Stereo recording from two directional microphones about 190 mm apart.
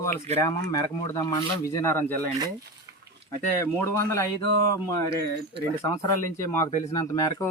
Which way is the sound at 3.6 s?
15° left (ahead or behind).